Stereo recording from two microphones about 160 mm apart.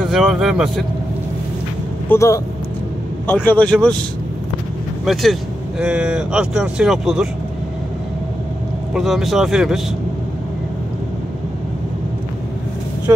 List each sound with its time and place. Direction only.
0.1 s speech: centre (ahead or behind)
2.0 s speech: 20° left (ahead or behind)
3.4 s speech: 5° left (ahead or behind)
5.0 s speech: centre (ahead or behind)
8.9 s speech: centre (ahead or behind)